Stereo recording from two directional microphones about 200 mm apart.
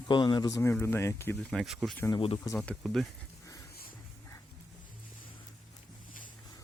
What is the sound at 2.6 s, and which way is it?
Speech, centre (ahead or behind).